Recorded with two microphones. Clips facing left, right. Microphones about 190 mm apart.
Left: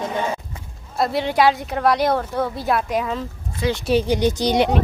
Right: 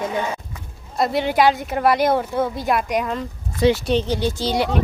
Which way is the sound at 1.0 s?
Centre (ahead or behind).